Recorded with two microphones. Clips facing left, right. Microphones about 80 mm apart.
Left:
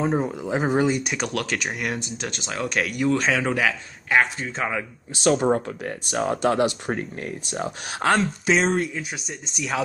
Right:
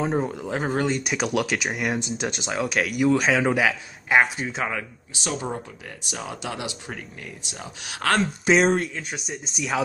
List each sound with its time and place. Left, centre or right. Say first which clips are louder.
0.0 s a man's voice: left 1 dB; centre
5.1 s speech: left 10 dB; left
5.9 s speech: left 10 dB; left
8.5 s a man's voice: right 3 dB; centre